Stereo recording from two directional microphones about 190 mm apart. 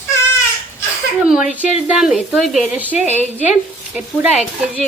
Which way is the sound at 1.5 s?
5° right (ahead or behind).